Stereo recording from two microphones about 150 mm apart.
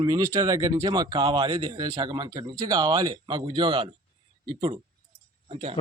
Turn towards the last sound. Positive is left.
turn(degrees=-40)  # may be behind; listen again after turning